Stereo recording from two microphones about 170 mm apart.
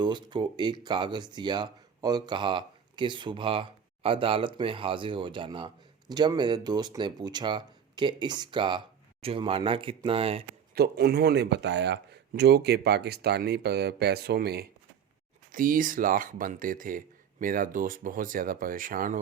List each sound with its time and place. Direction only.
0.0 s speech: 25° right (ahead or behind)
10.8 s speech: 70° right (ahead or behind)
15.5 s speech: 55° right (ahead or behind)